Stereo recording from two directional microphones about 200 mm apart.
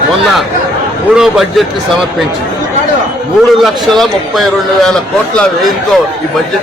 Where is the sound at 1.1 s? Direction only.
5° right (ahead or behind).